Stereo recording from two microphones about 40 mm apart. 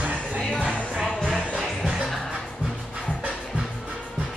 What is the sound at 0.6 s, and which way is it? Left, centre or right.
Music, left.